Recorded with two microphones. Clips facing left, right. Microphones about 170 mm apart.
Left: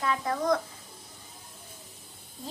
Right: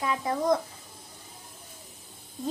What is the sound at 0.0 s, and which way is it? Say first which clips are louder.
Speech: right 1 dB; 20° right (ahead or behind).